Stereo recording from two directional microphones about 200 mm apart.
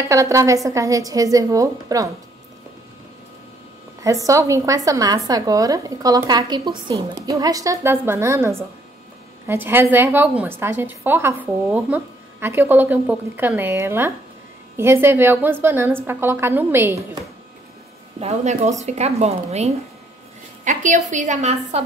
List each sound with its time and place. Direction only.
0.1 s a woman's voice: 15° right (ahead or behind)
4.0 s a woman's voice: 15° right (ahead or behind)
18.2 s a woman's voice: 35° right (ahead or behind)